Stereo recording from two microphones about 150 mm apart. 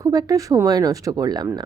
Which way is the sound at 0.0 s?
25° right (ahead or behind).